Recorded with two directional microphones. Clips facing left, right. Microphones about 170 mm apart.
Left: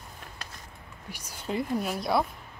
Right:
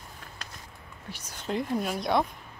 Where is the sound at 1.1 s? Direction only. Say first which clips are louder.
Even; 10° left (ahead or behind).